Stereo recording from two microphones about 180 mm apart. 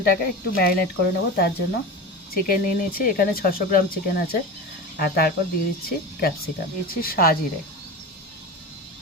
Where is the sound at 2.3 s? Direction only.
55° left (ahead or behind).